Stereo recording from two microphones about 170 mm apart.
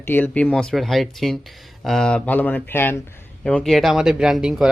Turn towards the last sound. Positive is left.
turn(degrees=-5)  # may be behind; listen again after turning